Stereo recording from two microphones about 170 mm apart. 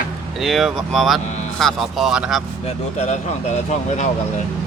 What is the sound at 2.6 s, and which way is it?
Speech, 40° left (ahead or behind).